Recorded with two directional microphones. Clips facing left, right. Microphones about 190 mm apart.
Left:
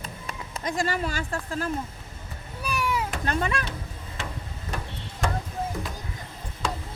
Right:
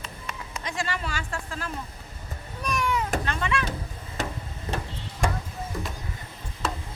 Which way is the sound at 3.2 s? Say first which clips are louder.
Left 1 dB; 40° left (ahead or behind).